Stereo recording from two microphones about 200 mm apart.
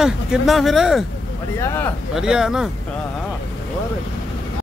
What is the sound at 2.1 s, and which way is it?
Speech, 5° right (ahead or behind).